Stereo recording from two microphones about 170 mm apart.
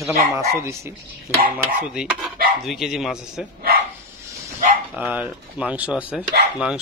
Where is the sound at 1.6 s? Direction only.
5° right (ahead or behind).